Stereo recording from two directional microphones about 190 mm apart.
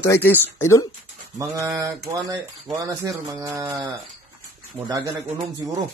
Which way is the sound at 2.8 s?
15° right (ahead or behind).